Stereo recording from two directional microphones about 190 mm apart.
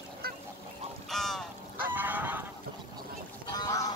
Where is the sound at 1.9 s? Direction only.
10° right (ahead or behind).